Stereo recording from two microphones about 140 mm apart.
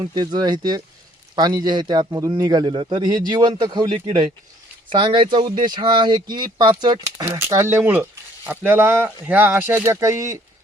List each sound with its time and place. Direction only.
0.0 s a man's voice: 30° right (ahead or behind)